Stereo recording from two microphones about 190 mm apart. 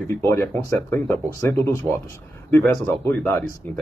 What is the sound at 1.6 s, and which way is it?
Speech, 15° left (ahead or behind).